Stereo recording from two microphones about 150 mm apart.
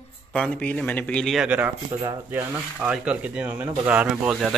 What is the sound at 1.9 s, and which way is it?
Speech, 20° right (ahead or behind).